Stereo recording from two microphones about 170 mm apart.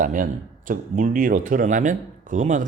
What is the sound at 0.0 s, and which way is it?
Speech, 50° right (ahead or behind).